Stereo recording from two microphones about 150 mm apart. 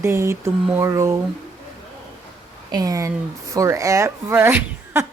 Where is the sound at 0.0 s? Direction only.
15° right (ahead or behind).